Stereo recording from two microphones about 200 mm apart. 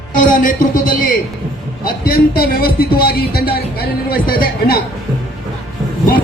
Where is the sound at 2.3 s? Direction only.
50° left (ahead or behind).